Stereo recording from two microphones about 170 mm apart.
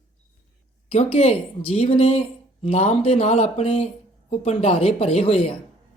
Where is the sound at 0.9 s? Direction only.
40° left (ahead or behind).